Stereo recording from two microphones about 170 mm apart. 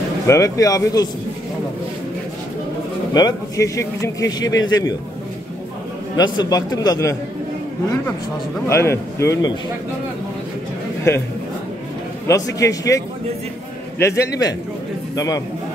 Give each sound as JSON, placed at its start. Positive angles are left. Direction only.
{"t": 0.3, "sound": "speech", "side_deg": 20}
{"t": 3.2, "sound": "speech", "side_deg": 20}
{"t": 6.1, "sound": "speech", "side_deg": 25}
{"t": 8.6, "sound": "a man's voice", "side_deg": 15}
{"t": 12.3, "sound": "a man's voice", "side_deg": 20}